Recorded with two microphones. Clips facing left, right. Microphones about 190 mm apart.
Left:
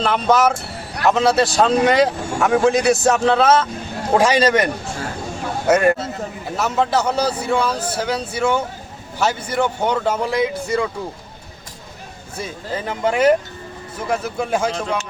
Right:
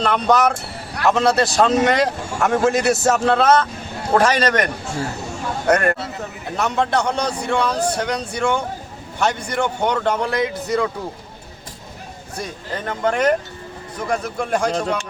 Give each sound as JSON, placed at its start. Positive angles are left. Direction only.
{"t": 0.0, "sound": "speech", "side_deg": 0}
{"t": 12.4, "sound": "speech", "side_deg": 5}
{"t": 14.7, "sound": "a man's voice", "side_deg": -40}